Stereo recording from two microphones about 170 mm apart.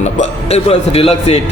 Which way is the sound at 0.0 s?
40° left (ahead or behind).